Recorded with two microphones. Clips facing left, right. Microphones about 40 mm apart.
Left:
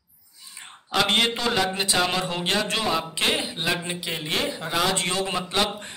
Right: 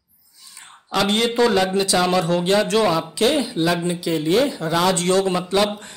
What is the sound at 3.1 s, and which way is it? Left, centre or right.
A man's voice, left.